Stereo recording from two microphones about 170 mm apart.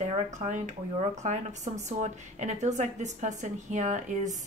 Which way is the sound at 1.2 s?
45° right (ahead or behind).